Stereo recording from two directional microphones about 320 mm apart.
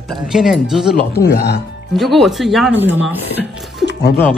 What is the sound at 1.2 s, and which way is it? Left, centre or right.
Speech, left.